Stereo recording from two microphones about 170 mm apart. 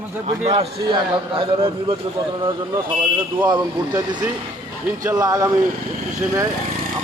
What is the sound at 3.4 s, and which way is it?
Speech, 25° right (ahead or behind).